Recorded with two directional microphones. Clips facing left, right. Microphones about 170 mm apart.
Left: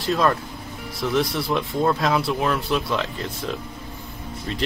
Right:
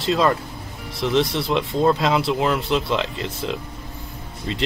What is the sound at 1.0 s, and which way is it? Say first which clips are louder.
Speech: right 2 dB; 25° right (ahead or behind).